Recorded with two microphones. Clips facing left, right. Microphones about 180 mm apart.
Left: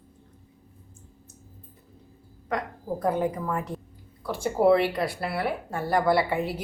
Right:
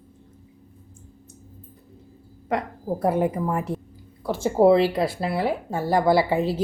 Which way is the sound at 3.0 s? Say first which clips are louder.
Right 4 dB; 25° right (ahead or behind).